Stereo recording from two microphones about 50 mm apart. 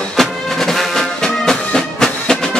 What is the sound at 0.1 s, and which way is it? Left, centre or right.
Music, centre.